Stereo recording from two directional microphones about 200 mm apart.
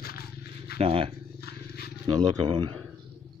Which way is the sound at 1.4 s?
50° left (ahead or behind).